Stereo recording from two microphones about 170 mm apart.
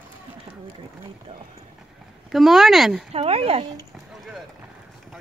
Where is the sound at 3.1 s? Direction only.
35° right (ahead or behind).